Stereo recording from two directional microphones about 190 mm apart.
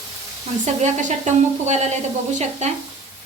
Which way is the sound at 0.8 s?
40° right (ahead or behind).